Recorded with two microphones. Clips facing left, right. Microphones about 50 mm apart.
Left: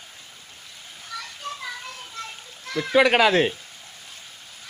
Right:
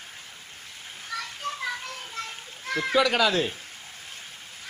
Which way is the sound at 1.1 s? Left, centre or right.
Right.